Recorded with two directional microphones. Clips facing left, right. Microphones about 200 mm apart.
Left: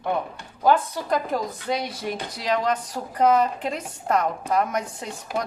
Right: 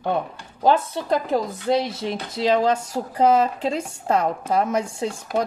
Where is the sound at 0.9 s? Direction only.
25° right (ahead or behind).